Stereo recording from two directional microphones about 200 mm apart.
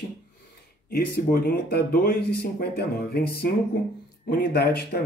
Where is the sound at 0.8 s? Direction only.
45° left (ahead or behind).